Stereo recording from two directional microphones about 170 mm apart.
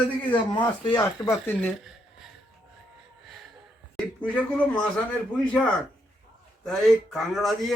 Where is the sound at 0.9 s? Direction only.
25° left (ahead or behind).